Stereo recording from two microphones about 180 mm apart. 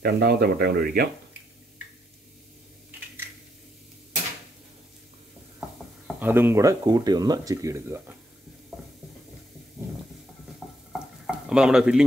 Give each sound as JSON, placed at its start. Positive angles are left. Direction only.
{"t": 0.0, "sound": "speech", "side_deg": -60}
{"t": 6.1, "sound": "speech", "side_deg": -10}
{"t": 10.9, "sound": "stir", "side_deg": -5}